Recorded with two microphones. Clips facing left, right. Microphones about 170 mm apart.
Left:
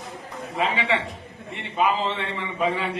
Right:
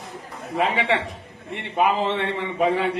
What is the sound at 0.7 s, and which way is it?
A man's voice, 60° right (ahead or behind).